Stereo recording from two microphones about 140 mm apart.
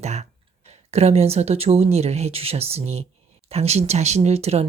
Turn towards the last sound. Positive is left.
turn(degrees=-50)  # may be behind; listen again after turning